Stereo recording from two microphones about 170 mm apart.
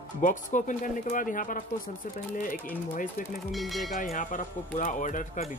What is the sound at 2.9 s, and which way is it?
Speech, 50° left (ahead or behind).